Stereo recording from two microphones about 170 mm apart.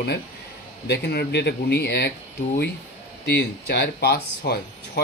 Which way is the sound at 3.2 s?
70° left (ahead or behind).